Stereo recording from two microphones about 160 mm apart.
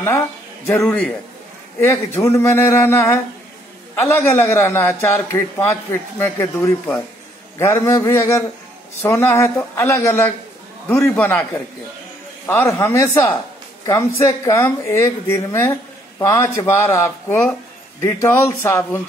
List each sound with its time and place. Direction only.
0.0 s a man's voice: 15° left (ahead or behind)